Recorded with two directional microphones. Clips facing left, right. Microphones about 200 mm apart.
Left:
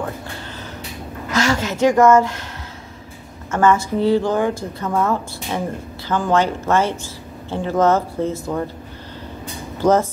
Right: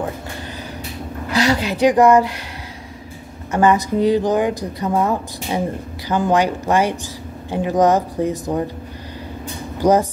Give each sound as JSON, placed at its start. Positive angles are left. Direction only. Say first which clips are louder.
{"t": 1.3, "sound": "a woman's voice", "louder": "right 2 dB", "side_deg": -15}
{"t": 3.5, "sound": "speech", "louder": "right 1 dB", "side_deg": -15}
{"t": 9.8, "sound": "speech", "louder": "right 1 dB", "side_deg": -15}